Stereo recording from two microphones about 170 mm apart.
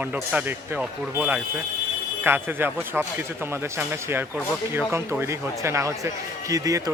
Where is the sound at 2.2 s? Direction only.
10° right (ahead or behind).